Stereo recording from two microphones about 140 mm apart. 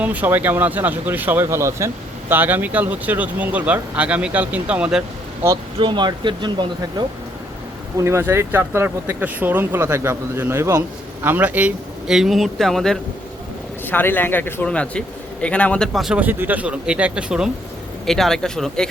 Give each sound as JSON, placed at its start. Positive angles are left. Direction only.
{"t": 0.0, "sound": "speech", "side_deg": -10}
{"t": 5.8, "sound": "speech", "side_deg": -35}
{"t": 7.9, "sound": "speech", "side_deg": -20}
{"t": 13.8, "sound": "a man's voice", "side_deg": 15}
{"t": 15.9, "sound": "speech", "side_deg": 0}